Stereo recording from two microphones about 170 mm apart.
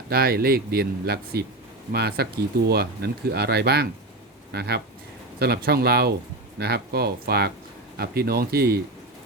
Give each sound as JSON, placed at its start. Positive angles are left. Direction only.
{"t": 0.1, "sound": "speech", "side_deg": -65}